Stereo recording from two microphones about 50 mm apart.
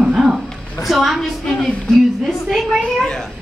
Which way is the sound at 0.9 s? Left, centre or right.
Centre.